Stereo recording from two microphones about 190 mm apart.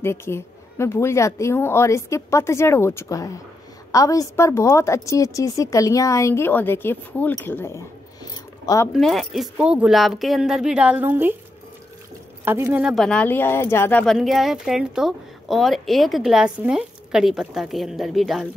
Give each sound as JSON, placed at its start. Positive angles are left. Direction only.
{"t": 0.0, "sound": "a woman's voice", "side_deg": 15}
{"t": 8.9, "sound": "speech", "side_deg": 0}
{"t": 12.4, "sound": "speech", "side_deg": -15}
{"t": 12.8, "sound": "speech", "side_deg": 0}